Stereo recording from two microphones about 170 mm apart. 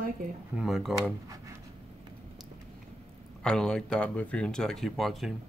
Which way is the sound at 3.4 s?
5° left (ahead or behind).